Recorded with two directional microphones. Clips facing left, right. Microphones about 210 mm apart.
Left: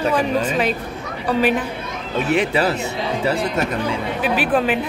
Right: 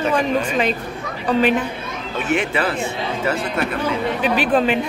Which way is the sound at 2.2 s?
35° left (ahead or behind).